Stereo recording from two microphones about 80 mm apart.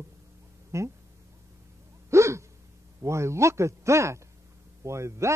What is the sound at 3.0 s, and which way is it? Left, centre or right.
Speech, right.